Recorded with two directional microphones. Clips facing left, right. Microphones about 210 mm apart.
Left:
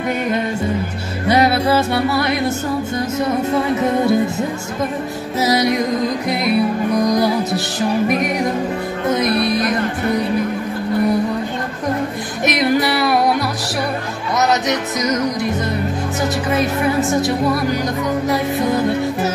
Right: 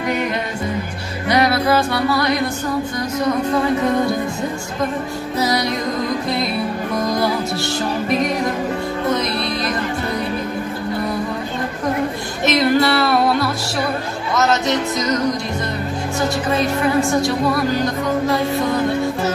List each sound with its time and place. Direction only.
1.3 s music: 25° left (ahead or behind)
5.4 s speech: 20° left (ahead or behind)
7.0 s speech: 20° left (ahead or behind)
12.4 s music: 20° left (ahead or behind)
17.0 s speech: 20° left (ahead or behind)